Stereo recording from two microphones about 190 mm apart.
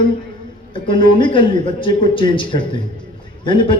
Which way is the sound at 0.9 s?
25° left (ahead or behind).